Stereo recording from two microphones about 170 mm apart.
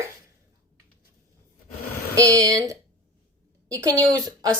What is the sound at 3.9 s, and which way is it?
Speech, 10° left (ahead or behind).